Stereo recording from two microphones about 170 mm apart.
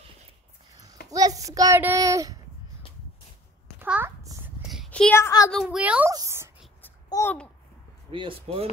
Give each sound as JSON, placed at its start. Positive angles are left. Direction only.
{"t": 1.1, "sound": "a child's voice", "side_deg": -20}
{"t": 3.8, "sound": "a sound", "side_deg": -10}
{"t": 5.1, "sound": "speech", "side_deg": 15}
{"t": 5.5, "sound": "a child's voice", "side_deg": 0}
{"t": 6.1, "sound": "a sound", "side_deg": -15}
{"t": 7.1, "sound": "babbling", "side_deg": 15}
{"t": 8.1, "sound": "speech", "side_deg": -30}